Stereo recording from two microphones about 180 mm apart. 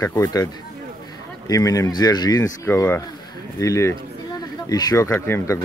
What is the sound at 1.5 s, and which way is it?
Speech, 20° left (ahead or behind).